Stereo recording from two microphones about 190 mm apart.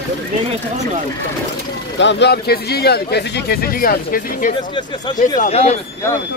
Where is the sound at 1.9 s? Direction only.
70° left (ahead or behind); by 4.5 s 50° left (ahead or behind).